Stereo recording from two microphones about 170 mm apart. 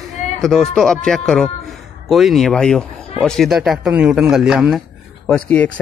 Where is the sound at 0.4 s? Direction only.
5° left (ahead or behind).